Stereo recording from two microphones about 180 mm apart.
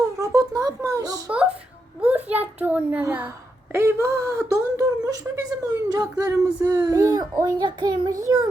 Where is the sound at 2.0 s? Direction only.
10° right (ahead or behind).